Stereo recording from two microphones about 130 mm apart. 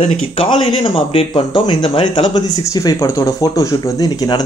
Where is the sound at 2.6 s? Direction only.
30° left (ahead or behind).